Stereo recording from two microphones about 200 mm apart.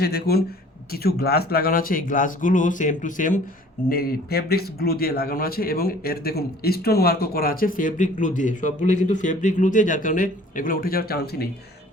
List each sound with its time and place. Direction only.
0.0 s a man's voice: 50° left (ahead or behind)